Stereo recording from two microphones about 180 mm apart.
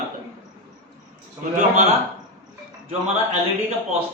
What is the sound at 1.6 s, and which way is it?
Speech, 40° right (ahead or behind).